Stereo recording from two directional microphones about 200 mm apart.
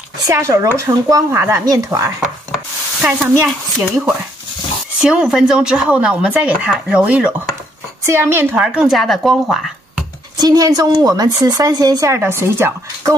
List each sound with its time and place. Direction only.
0.3 s speech: 15° right (ahead or behind)
3.0 s speech: 5° right (ahead or behind)
5.0 s speech: 5° right (ahead or behind)
10.3 s speech: 20° right (ahead or behind)